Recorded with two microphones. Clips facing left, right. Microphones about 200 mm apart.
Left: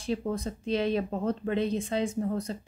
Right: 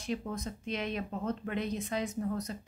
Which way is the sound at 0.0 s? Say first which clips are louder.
Left 5 dB; 30° left (ahead or behind).